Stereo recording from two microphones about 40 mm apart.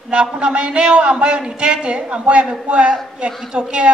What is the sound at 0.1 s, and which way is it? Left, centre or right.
A woman's voice, right.